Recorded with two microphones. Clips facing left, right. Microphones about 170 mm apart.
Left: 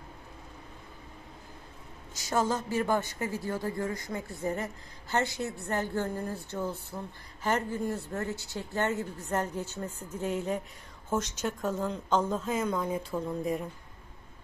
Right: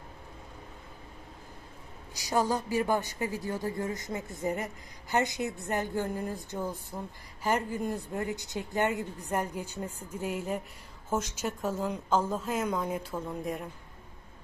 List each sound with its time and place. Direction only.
2.1 s a woman's voice: 15° right (ahead or behind)